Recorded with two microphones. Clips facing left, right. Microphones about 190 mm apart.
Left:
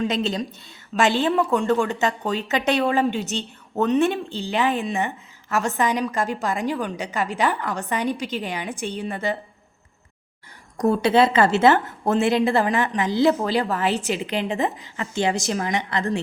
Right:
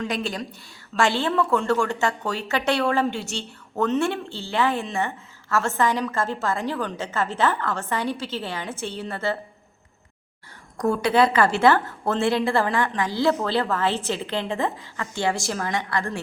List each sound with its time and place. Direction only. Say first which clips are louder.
0.0 s a woman's voice: left 4 dB; 20° left (ahead or behind)
10.8 s a woman's voice: left 2 dB; 25° left (ahead or behind)